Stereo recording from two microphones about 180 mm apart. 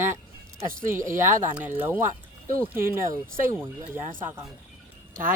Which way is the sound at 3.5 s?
10° right (ahead or behind).